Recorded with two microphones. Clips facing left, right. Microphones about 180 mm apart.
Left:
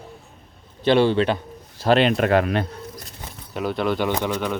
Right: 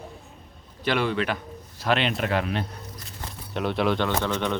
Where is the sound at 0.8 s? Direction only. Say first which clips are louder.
Left 7 dB; 30° left (ahead or behind); by 2.6 s 55° left (ahead or behind).